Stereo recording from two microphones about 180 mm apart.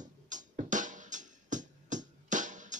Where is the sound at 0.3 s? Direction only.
45° right (ahead or behind).